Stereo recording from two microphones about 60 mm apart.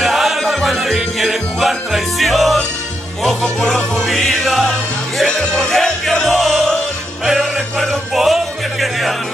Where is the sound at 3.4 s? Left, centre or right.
Centre.